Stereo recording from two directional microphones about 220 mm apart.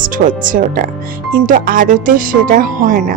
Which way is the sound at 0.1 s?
35° right (ahead or behind).